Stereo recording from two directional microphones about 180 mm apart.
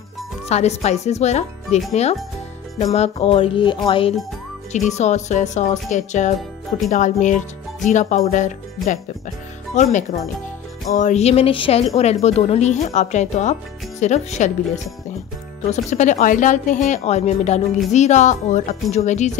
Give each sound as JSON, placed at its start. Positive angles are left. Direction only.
{"t": 0.5, "sound": "a woman's voice", "side_deg": 40}
{"t": 2.9, "sound": "a woman's voice", "side_deg": 35}
{"t": 4.7, "sound": "a woman's voice", "side_deg": 40}
{"t": 15.7, "sound": "a woman's voice", "side_deg": 40}